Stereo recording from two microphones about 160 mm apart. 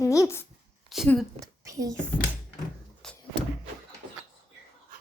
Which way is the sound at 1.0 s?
5° left (ahead or behind).